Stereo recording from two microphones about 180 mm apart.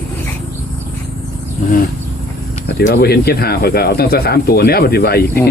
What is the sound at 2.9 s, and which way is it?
Speech, 60° left (ahead or behind).